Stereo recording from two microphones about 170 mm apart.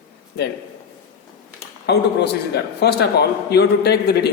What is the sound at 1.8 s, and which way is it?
A man's voice, 80° left.